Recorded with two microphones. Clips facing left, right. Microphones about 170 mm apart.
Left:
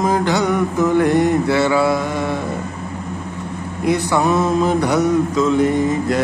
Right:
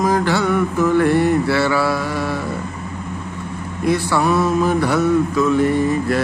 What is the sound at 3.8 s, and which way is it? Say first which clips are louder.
Mantra: left 1 dB; 15° left (ahead or behind).